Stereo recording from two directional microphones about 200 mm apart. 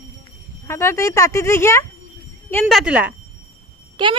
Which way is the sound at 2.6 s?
5° right (ahead or behind).